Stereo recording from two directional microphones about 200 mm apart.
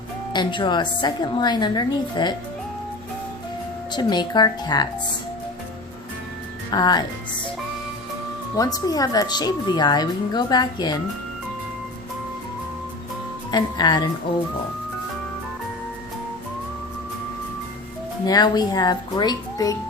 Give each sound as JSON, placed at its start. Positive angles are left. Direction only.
{"t": 0.3, "sound": "a woman's voice", "side_deg": 20}
{"t": 3.9, "sound": "a woman's voice", "side_deg": 20}
{"t": 6.7, "sound": "a woman's voice", "side_deg": 20}
{"t": 8.5, "sound": "a woman's voice", "side_deg": 20}
{"t": 13.5, "sound": "a woman's voice", "side_deg": 20}
{"t": 18.3, "sound": "a woman's voice", "side_deg": 20}